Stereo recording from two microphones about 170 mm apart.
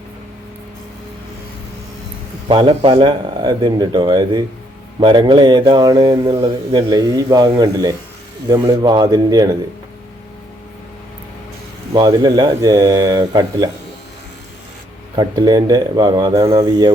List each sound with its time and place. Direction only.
2.5 s speech: 30° right (ahead or behind)
11.9 s speech: 25° right (ahead or behind)
15.1 s speech: 25° right (ahead or behind)